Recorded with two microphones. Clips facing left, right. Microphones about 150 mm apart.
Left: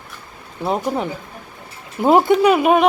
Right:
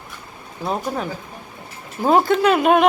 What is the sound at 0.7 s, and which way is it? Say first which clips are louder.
Speech: left 3 dB; 20° left (ahead or behind).